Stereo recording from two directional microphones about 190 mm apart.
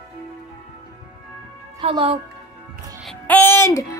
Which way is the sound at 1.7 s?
30° right (ahead or behind).